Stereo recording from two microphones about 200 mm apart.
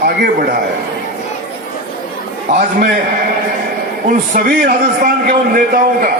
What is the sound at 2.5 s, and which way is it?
Speech, 45° right (ahead or behind).